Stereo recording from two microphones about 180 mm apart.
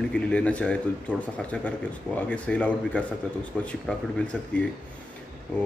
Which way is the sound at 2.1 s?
5° left (ahead or behind).